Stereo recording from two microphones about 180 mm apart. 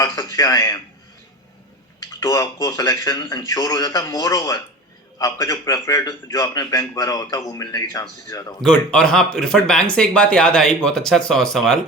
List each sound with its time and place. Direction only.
0.0 s a sound: 20° left (ahead or behind)
2.0 s a man's voice: 20° left (ahead or behind)
8.6 s speech: 5° left (ahead or behind)